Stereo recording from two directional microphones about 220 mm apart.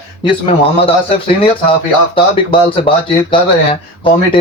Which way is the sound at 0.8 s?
25° left (ahead or behind).